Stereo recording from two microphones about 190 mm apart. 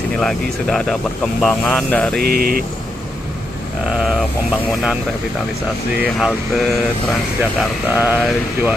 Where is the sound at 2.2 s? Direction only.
50° right (ahead or behind).